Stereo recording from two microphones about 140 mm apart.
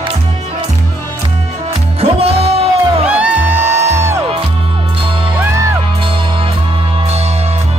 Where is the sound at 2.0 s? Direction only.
45° right (ahead or behind).